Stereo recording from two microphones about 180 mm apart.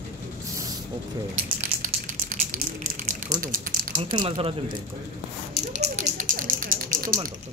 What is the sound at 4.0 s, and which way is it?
Speech, 30° right (ahead or behind).